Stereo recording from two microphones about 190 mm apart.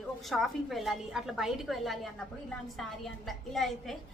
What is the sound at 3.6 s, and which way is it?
Speech, centre (ahead or behind).